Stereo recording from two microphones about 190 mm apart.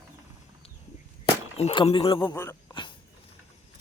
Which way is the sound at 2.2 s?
10° left (ahead or behind).